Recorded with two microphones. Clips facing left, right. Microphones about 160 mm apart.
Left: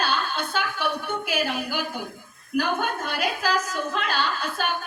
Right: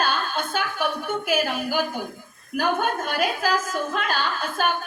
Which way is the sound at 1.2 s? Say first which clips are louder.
Right 4 dB; 50° right (ahead or behind).